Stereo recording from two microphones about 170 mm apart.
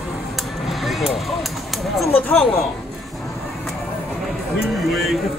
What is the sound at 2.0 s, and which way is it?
Speech, 5° left (ahead or behind).